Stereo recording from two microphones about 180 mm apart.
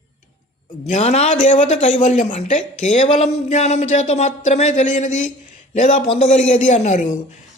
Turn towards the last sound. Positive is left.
turn(degrees=40)  # may be behind; listen again after turning